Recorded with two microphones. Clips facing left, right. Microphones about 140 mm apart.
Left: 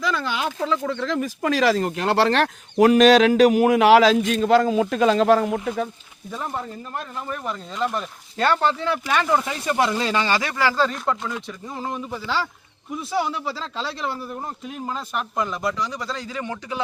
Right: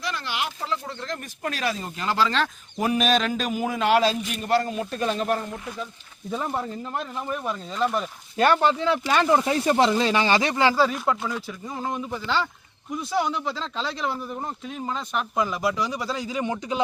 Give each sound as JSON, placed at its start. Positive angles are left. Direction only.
{"t": 0.8, "sound": "speech", "side_deg": 90}
{"t": 6.3, "sound": "speech", "side_deg": -10}
{"t": 8.4, "sound": "a man's voice", "side_deg": -15}
{"t": 9.9, "sound": "a man's voice", "side_deg": -15}
{"t": 10.8, "sound": "speech", "side_deg": -5}